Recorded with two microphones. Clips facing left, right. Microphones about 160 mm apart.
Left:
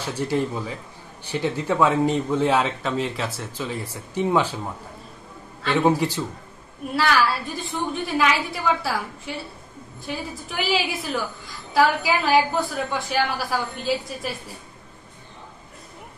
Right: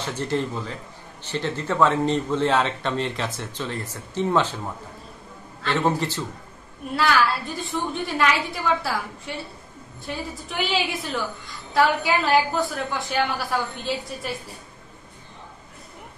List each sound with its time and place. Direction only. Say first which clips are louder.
0.0 s a man's voice: left 2 dB; 10° left (ahead or behind)
5.6 s a man's voice: left 3 dB; 10° left (ahead or behind)
7.0 s a woman's voice: even; centre (ahead or behind)